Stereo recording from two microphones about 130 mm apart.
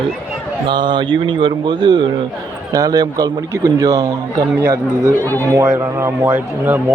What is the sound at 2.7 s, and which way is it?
A man's voice, 25° right (ahead or behind).